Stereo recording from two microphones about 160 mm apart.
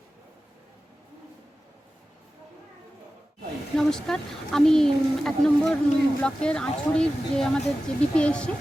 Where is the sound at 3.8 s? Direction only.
5° left (ahead or behind).